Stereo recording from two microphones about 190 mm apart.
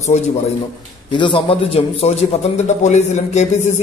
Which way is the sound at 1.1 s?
25° left (ahead or behind).